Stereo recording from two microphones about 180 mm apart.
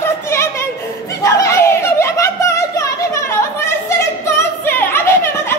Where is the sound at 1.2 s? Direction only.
15° left (ahead or behind).